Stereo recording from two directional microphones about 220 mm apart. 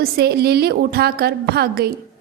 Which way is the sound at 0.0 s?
45° right (ahead or behind).